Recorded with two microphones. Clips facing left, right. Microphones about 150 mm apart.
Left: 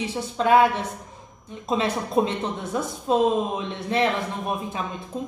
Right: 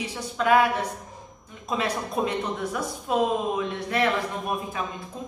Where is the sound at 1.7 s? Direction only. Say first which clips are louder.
Left 3 dB; 25° left (ahead or behind).